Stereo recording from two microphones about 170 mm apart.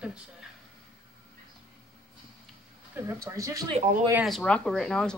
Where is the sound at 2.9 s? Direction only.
15° right (ahead or behind).